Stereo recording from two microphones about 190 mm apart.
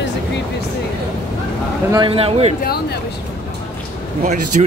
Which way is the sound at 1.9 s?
25° right (ahead or behind).